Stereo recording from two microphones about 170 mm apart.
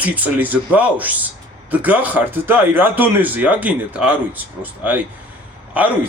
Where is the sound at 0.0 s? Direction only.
10° right (ahead or behind).